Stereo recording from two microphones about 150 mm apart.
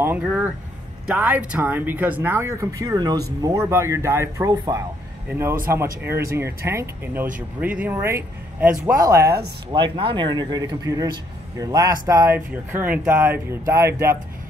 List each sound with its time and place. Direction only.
0.2 s speech: 10° right (ahead or behind)
9.0 s speech: 20° right (ahead or behind)
12.4 s speech: 10° right (ahead or behind)